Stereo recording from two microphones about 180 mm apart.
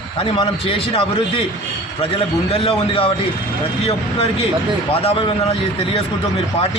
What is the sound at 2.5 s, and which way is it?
Speech, 35° left (ahead or behind).